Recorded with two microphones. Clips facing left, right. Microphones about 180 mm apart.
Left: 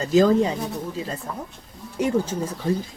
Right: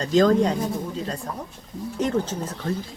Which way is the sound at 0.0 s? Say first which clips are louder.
Left 1 dB; 5° left (ahead or behind).